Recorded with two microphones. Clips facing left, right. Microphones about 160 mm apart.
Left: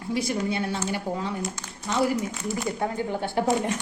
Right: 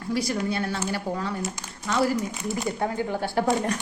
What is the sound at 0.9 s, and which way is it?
Speech, 20° left (ahead or behind).